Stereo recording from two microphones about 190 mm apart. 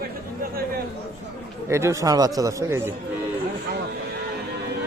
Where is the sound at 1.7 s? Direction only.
15° right (ahead or behind).